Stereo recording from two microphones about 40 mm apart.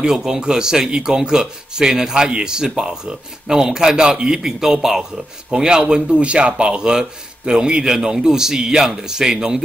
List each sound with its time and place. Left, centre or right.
0.0 s speech: centre